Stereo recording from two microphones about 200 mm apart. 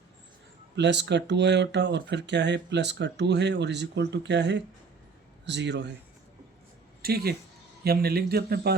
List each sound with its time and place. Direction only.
0.8 s speech: 60° right (ahead or behind)
7.0 s speech: 50° right (ahead or behind)